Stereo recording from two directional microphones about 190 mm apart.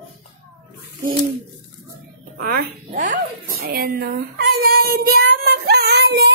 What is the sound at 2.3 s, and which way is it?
Speech, 50° right (ahead or behind).